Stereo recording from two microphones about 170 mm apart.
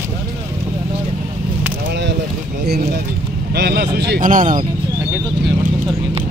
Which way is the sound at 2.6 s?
70° right (ahead or behind).